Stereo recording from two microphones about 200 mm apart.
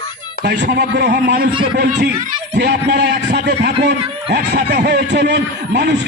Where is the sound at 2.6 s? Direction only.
55° right (ahead or behind).